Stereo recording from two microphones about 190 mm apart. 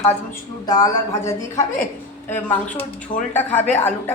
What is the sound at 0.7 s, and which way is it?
Speech, 15° left (ahead or behind).